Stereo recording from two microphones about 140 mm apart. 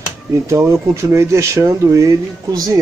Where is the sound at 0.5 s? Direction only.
20° right (ahead or behind).